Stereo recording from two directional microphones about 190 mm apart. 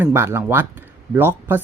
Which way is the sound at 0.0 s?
10° right (ahead or behind).